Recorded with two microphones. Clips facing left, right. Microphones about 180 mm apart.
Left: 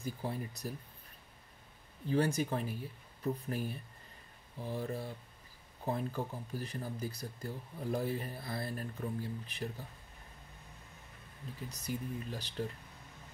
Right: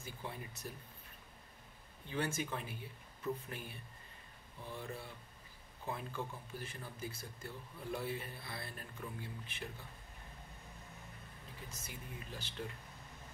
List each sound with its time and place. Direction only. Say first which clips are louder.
0.0 s speech: left 8 dB; 35° left (ahead or behind)
2.0 s speech: left 7 dB; 35° left (ahead or behind)
11.7 s speech: left 13 dB; 40° left (ahead or behind)